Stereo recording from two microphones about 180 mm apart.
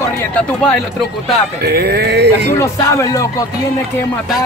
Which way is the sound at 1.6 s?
60° right (ahead or behind).